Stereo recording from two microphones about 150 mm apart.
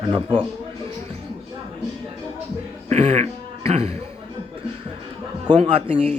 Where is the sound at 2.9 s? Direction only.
45° right (ahead or behind).